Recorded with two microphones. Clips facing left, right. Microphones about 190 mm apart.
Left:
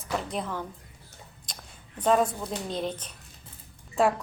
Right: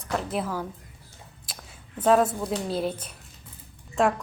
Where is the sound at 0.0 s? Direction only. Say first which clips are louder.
Right 3 dB; centre (ahead or behind).